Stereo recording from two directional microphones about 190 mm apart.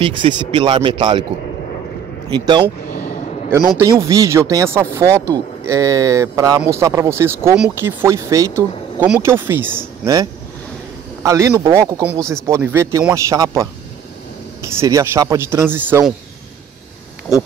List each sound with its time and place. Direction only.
0.0 s speech: 25° right (ahead or behind)
2.3 s speech: 25° right (ahead or behind)
11.2 s speech: 15° right (ahead or behind)